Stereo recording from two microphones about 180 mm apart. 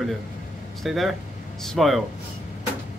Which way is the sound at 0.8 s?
Centre (ahead or behind).